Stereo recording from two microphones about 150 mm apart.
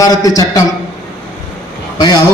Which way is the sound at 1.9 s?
30° left (ahead or behind).